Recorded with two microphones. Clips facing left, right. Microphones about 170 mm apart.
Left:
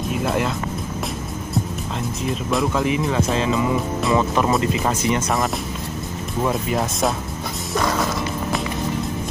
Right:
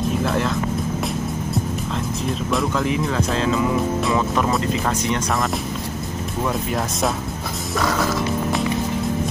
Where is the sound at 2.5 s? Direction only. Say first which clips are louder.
Left 2 dB; 5° left (ahead or behind).